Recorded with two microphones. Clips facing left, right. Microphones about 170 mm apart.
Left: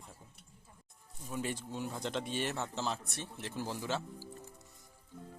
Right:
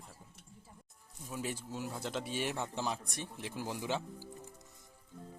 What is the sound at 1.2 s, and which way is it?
Speech, 5° right (ahead or behind).